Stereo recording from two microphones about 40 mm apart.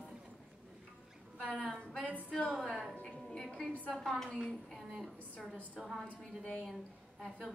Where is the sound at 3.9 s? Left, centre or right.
Centre.